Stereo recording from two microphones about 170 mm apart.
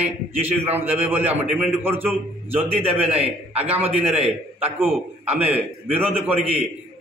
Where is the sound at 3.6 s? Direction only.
10° right (ahead or behind).